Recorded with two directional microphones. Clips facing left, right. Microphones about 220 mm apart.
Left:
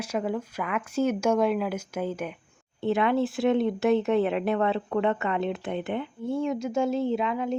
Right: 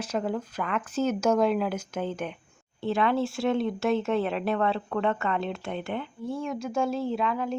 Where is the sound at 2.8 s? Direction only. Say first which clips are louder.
Left 2 dB; 20° left (ahead or behind).